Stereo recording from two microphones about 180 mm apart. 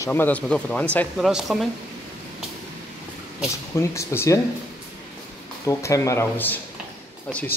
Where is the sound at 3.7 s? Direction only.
15° left (ahead or behind).